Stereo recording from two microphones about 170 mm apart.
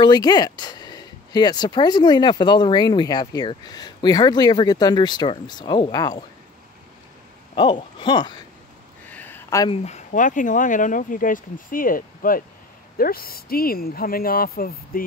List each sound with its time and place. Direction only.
0.0 s speech: 25° left (ahead or behind)
7.5 s speech: 30° left (ahead or behind)
9.1 s a sound: 10° left (ahead or behind)
9.7 s speech: 40° left (ahead or behind); by 15.0 s 60° left (ahead or behind)